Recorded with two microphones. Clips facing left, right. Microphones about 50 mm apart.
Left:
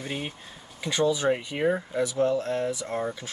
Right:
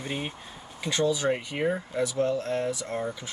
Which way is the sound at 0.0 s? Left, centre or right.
Centre.